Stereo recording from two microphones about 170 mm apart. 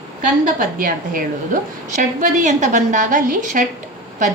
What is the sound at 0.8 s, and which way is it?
A woman's voice, 55° right (ahead or behind).